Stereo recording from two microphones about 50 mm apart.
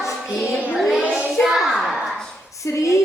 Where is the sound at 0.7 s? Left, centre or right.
Centre.